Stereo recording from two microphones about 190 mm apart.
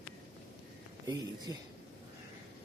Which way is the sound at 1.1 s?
20° right (ahead or behind).